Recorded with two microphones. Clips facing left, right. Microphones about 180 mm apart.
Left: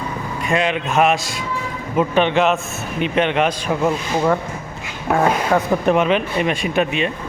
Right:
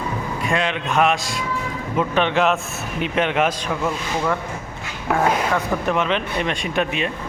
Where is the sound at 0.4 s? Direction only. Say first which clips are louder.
Left 4 dB; 5° left (ahead or behind).